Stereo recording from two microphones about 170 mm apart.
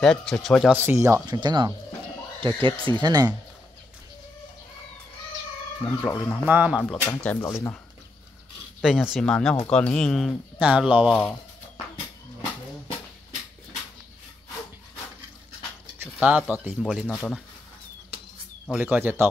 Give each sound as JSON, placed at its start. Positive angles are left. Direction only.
{"t": 0.0, "sound": "speech", "side_deg": 5}
{"t": 0.7, "sound": "speech", "side_deg": -15}
{"t": 5.9, "sound": "speech", "side_deg": 10}
{"t": 6.4, "sound": "speech", "side_deg": -10}
{"t": 6.8, "sound": "speech", "side_deg": 10}
{"t": 8.8, "sound": "speech", "side_deg": -5}
{"t": 16.0, "sound": "speech", "side_deg": -10}
{"t": 18.7, "sound": "speech", "side_deg": -5}